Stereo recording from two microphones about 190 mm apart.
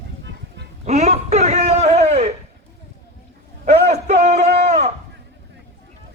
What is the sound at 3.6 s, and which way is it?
Speech, 35° right (ahead or behind).